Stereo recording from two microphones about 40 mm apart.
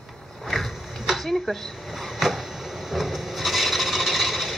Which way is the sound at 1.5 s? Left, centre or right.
Centre.